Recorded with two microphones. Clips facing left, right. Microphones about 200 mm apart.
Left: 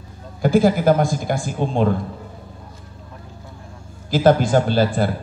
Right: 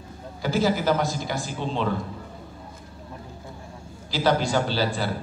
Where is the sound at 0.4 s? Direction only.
50° left (ahead or behind).